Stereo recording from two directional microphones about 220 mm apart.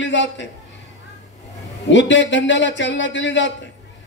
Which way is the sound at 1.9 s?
55° left (ahead or behind).